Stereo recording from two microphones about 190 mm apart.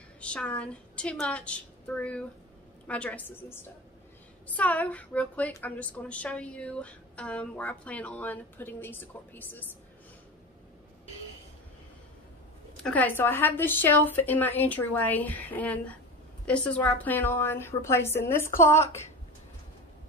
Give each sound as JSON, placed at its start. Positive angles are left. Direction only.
{"t": 0.2, "sound": "a woman's voice", "side_deg": 5}
{"t": 12.7, "sound": "a woman's voice", "side_deg": 5}